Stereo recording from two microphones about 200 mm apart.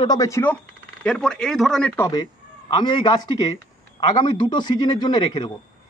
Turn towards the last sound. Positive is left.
turn(degrees=20)  # may be behind; listen again after turning